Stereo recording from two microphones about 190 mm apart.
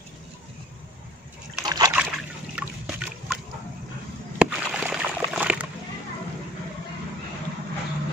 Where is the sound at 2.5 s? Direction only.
5° right (ahead or behind).